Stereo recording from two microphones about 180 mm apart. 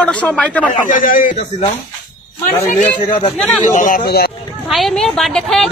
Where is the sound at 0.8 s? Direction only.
50° left (ahead or behind).